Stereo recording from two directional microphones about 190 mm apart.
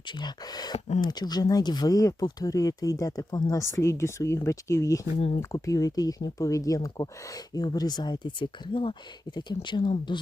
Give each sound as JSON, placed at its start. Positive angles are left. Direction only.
{"t": 0.2, "sound": "speech", "side_deg": 20}